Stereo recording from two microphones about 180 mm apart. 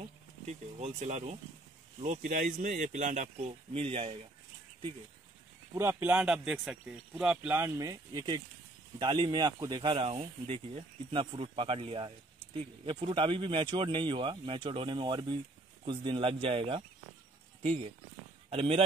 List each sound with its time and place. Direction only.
0.5 s speech: 40° right (ahead or behind)
5.8 s speech: 15° right (ahead or behind); by 16.8 s 30° right (ahead or behind)
18.5 s speech: 35° right (ahead or behind)